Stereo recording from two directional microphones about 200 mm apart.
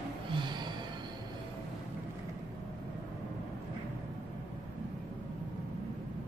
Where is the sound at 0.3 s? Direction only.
25° right (ahead or behind).